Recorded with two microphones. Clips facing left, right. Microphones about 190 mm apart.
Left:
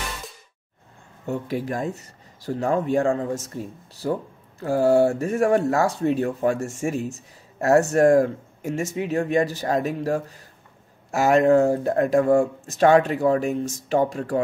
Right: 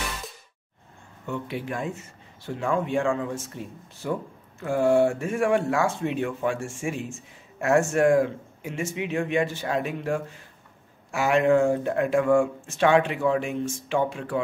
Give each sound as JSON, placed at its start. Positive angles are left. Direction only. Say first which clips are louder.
{"t": 1.2, "sound": "speech", "louder": "left 5 dB", "side_deg": 40}